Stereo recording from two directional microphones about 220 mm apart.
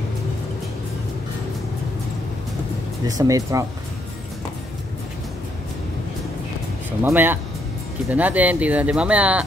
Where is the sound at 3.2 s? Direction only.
15° right (ahead or behind).